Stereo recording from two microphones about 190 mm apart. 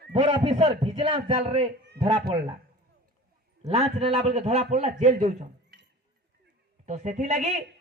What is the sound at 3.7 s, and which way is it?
A man's voice, 30° right (ahead or behind).